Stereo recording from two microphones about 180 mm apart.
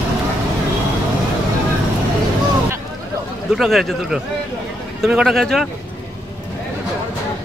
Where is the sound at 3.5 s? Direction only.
Centre (ahead or behind).